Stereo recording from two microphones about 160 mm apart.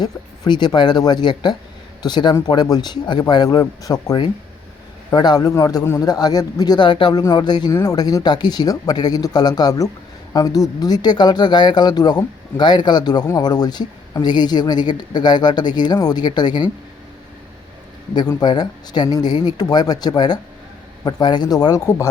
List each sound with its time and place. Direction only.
0.0 s speech: 25° left (ahead or behind)
18.1 s speech: 25° left (ahead or behind)